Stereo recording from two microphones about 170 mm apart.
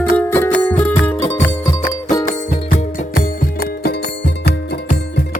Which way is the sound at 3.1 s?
70° left (ahead or behind).